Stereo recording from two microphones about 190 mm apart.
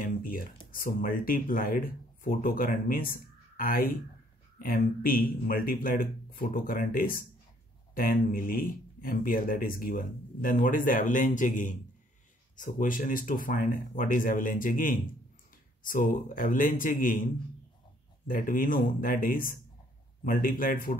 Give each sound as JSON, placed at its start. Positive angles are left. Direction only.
{"t": 0.0, "sound": "a man's voice", "side_deg": 45}
{"t": 18.2, "sound": "a man's voice", "side_deg": 45}